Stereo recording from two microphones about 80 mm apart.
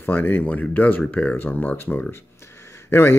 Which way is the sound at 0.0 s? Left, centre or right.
Left.